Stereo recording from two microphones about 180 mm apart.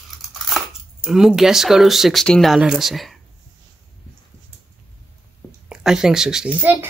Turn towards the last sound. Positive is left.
turn(degrees=-10)  # may be behind; listen again after turning